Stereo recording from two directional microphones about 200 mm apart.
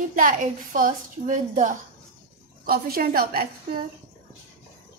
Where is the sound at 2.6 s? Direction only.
50° right (ahead or behind).